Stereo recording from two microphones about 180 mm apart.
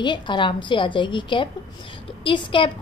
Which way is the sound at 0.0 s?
25° left (ahead or behind).